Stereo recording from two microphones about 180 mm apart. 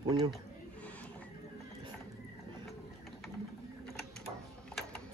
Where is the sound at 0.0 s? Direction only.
25° right (ahead or behind).